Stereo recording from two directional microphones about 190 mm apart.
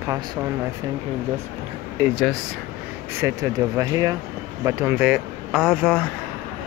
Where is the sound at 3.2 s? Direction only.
15° right (ahead or behind); by 6.0 s centre (ahead or behind).